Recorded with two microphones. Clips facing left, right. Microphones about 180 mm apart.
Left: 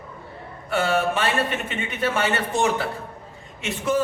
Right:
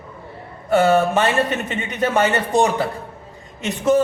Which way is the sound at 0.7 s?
40° right (ahead or behind).